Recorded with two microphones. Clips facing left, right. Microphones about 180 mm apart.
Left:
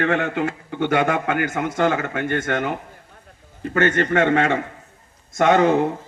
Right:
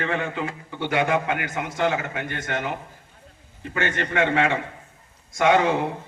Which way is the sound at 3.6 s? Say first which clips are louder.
Left 7 dB; 45° left (ahead or behind).